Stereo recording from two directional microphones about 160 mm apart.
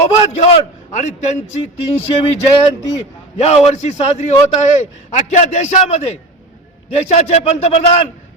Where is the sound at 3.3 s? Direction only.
40° left (ahead or behind).